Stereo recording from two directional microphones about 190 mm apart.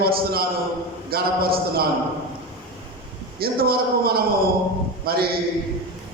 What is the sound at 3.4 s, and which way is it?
A man's voice, 55° right (ahead or behind).